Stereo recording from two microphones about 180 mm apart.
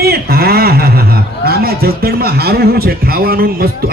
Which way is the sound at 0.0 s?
60° right (ahead or behind).